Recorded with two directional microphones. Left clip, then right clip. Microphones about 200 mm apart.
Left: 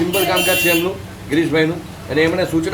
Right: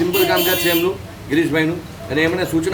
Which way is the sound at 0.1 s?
5° right (ahead or behind).